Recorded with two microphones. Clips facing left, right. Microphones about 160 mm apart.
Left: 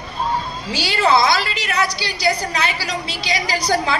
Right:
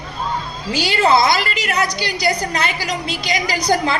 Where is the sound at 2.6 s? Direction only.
50° right (ahead or behind).